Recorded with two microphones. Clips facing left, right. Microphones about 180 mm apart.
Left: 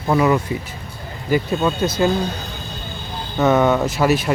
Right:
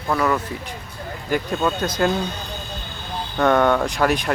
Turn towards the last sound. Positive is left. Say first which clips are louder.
# left 3 dB
turn(degrees=5)  # may be behind; listen again after turning